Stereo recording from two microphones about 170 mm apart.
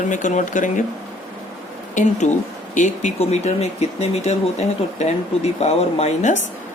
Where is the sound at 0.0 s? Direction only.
45° left (ahead or behind).